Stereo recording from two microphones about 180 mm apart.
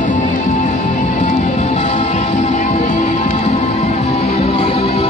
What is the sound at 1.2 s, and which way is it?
Music, 40° left (ahead or behind).